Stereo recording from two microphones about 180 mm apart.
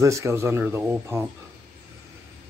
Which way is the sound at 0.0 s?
15° right (ahead or behind).